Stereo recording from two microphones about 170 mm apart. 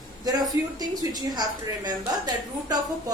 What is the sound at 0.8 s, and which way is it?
A woman's voice, 25° right (ahead or behind).